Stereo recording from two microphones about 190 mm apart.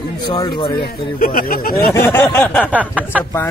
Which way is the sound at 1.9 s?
10° left (ahead or behind).